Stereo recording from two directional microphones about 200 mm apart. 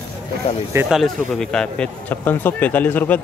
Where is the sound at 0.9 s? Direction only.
Centre (ahead or behind).